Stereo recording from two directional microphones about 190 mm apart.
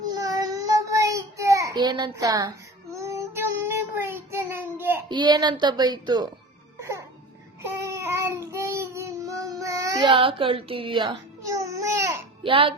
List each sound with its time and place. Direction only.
0.1 s child singing: 20° right (ahead or behind)
5.1 s speech: 20° right (ahead or behind)
7.6 s child singing: 15° right (ahead or behind)
12.4 s a child's voice: 30° right (ahead or behind)